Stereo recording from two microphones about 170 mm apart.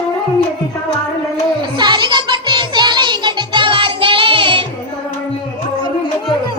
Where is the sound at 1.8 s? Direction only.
25° right (ahead or behind).